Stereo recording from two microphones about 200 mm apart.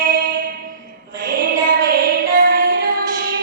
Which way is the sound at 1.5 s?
45° right (ahead or behind).